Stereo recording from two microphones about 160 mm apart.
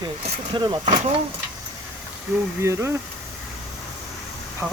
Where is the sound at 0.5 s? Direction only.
30° right (ahead or behind).